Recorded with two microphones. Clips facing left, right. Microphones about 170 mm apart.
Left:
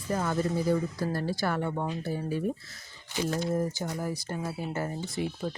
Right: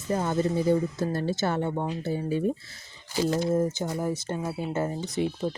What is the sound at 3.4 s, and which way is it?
Speech, 20° right (ahead or behind).